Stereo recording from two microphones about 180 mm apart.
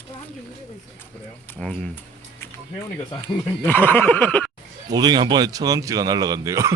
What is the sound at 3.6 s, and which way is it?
Snicker, 10° left (ahead or behind).